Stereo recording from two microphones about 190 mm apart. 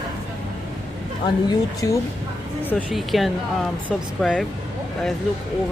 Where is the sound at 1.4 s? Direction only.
20° left (ahead or behind).